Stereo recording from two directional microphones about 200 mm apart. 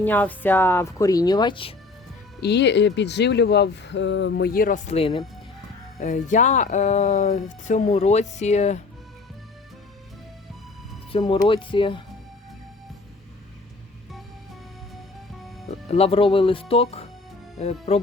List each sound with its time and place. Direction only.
0.0 s speech: 10° left (ahead or behind); by 1.7 s 25° left (ahead or behind)
2.4 s speech: 60° left (ahead or behind); by 8.8 s 35° left (ahead or behind)
11.1 s speech: 25° left (ahead or behind)
15.9 s speech: 30° left (ahead or behind)